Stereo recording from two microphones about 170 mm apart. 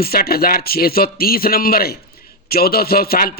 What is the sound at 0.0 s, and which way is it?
A man's voice, 65° left (ahead or behind).